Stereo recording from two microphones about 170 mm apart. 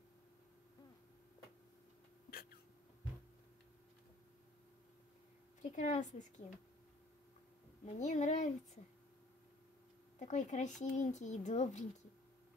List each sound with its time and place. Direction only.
5.6 s a child's voice: 45° left (ahead or behind)
7.8 s a child's voice: 45° left (ahead or behind)
10.1 s a child's voice: 45° left (ahead or behind)